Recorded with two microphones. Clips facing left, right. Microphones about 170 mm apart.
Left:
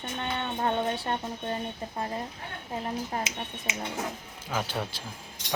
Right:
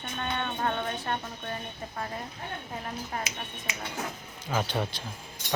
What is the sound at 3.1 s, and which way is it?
Speech, 25° left (ahead or behind).